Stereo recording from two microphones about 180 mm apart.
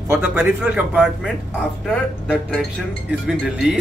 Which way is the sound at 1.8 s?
5° left (ahead or behind).